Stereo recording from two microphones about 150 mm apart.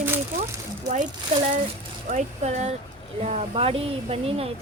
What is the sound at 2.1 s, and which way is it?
Speech, 50° right (ahead or behind).